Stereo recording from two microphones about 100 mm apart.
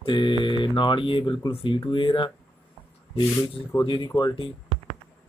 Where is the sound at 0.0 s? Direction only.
55° left (ahead or behind).